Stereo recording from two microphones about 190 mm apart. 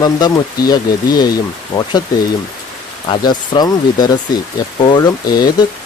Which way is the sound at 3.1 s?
20° left (ahead or behind).